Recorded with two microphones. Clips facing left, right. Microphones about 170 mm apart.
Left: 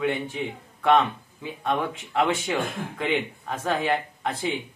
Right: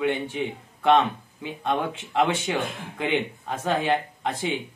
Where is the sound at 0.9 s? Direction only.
20° right (ahead or behind).